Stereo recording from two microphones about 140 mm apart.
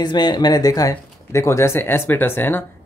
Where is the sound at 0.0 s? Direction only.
30° left (ahead or behind).